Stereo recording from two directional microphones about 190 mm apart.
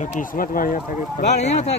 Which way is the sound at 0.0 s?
40° left (ahead or behind).